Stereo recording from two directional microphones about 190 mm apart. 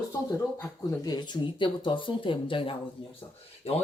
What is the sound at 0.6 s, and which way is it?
Speech, 20° left (ahead or behind).